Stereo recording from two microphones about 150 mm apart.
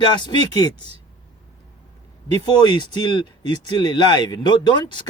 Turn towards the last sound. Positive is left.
turn(degrees=30)  # may be behind; listen again after turning